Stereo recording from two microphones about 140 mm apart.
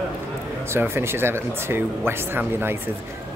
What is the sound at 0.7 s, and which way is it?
Speech, 15° right (ahead or behind).